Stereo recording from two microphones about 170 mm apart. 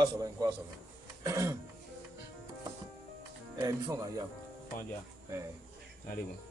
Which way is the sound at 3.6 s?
20° right (ahead or behind).